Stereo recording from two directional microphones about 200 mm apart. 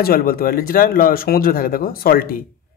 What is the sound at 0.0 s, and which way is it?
Speech, 50° left (ahead or behind).